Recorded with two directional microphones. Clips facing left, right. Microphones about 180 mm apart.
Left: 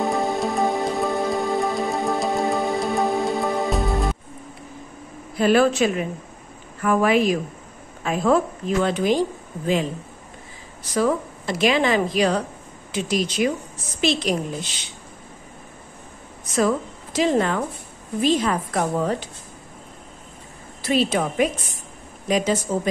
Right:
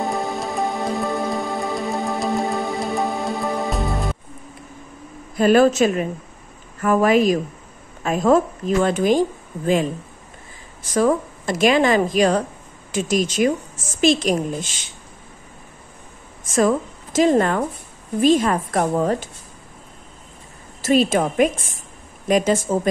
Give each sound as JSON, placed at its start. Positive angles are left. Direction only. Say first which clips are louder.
{"t": 0.0, "sound": "music", "louder": "left 2 dB", "side_deg": 0}
{"t": 5.3, "sound": "a woman's voice", "louder": "right 3 dB", "side_deg": -45}
{"t": 10.8, "sound": "a woman's voice", "louder": "right 3 dB", "side_deg": -45}
{"t": 16.4, "sound": "a woman's voice", "louder": "right 3 dB", "side_deg": -45}
{"t": 20.8, "sound": "a woman's voice", "louder": "right 4 dB", "side_deg": -50}